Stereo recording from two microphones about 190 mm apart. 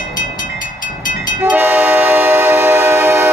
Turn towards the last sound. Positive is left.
turn(degrees=-10)  # may be behind; listen again after turning